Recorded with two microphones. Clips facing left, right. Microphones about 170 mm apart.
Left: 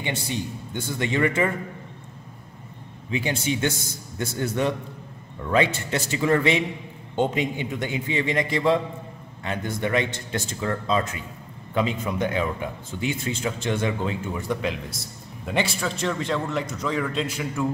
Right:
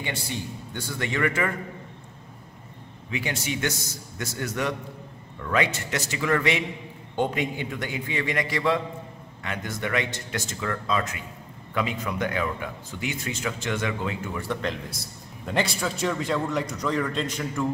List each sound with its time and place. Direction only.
0.0 s speech: 20° left (ahead or behind)
3.1 s speech: 25° left (ahead or behind)
14.5 s a man's voice: 5° left (ahead or behind)